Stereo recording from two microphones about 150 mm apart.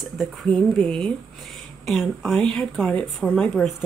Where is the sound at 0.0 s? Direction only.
Centre (ahead or behind).